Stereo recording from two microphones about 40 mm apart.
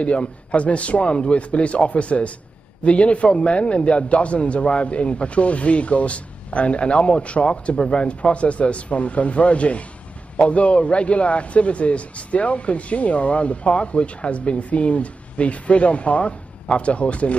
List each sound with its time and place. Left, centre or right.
0.0 s a man's voice: left